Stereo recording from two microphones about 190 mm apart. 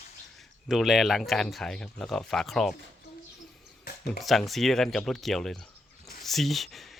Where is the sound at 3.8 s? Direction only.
55° left (ahead or behind).